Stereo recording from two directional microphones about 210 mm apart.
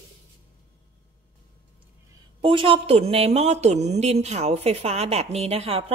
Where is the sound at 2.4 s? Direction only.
25° right (ahead or behind).